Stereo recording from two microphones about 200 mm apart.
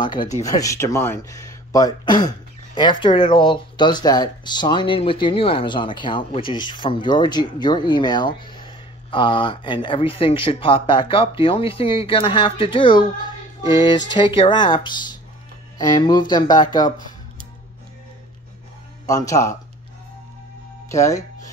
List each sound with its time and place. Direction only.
0.4 s speech: 15° left (ahead or behind)
19.0 s speech: 15° left (ahead or behind)
20.9 s speech: 15° left (ahead or behind)